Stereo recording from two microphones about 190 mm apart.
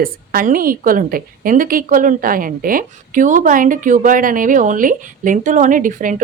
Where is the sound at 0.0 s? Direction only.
50° right (ahead or behind).